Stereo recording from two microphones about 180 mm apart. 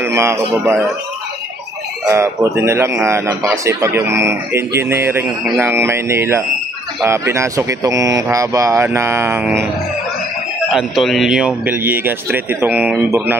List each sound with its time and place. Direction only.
0.0 s speech: 15° right (ahead or behind)
2.0 s speech: 15° right (ahead or behind)
10.7 s speech: centre (ahead or behind)